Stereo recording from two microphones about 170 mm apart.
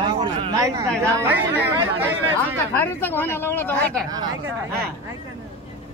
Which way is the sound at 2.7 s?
10° left (ahead or behind).